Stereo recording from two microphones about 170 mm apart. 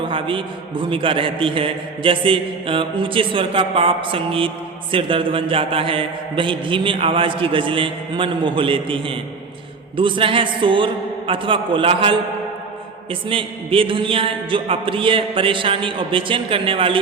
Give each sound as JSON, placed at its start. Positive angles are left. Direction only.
{"t": 0.1, "sound": "a man's voice", "side_deg": -30}